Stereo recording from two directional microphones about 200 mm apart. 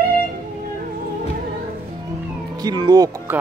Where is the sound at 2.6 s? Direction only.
20° right (ahead or behind).